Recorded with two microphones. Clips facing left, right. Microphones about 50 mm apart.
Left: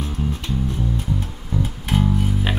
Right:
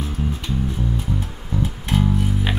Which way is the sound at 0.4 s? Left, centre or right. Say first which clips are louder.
Even; centre.